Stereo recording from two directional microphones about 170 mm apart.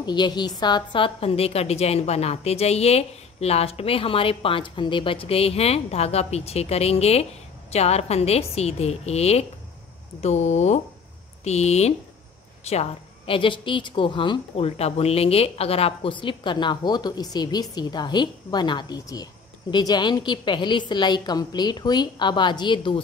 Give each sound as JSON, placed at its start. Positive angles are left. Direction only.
{"t": 0.0, "sound": "a woman's voice", "side_deg": 25}